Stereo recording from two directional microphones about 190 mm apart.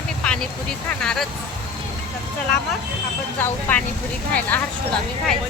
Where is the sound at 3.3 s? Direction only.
10° left (ahead or behind).